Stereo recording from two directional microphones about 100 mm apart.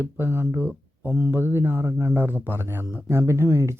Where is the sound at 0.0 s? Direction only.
20° right (ahead or behind).